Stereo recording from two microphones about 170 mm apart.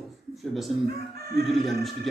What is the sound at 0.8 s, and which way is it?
Speech, 70° right (ahead or behind).